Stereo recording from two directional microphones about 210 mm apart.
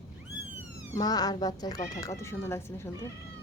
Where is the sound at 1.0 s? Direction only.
20° left (ahead or behind).